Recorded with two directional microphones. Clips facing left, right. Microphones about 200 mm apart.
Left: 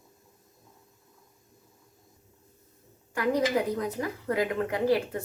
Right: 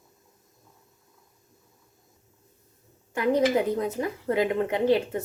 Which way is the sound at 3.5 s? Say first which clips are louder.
Right 3 dB; 25° right (ahead or behind).